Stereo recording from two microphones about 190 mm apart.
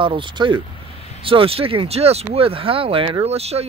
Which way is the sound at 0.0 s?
25° right (ahead or behind).